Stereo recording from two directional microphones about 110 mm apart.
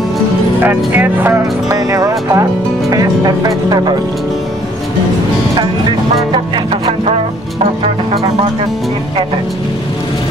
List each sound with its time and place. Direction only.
0.6 s speech: 15° right (ahead or behind)
1.7 s speech: 30° right (ahead or behind)
6.3 s music: 50° right (ahead or behind)